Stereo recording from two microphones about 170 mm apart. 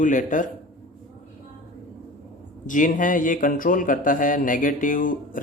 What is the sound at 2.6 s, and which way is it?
A man's voice, 50° left (ahead or behind).